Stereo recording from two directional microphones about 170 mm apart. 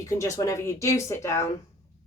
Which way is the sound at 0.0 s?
20° left (ahead or behind).